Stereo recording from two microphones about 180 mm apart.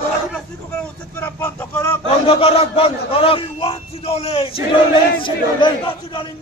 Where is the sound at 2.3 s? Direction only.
30° left (ahead or behind).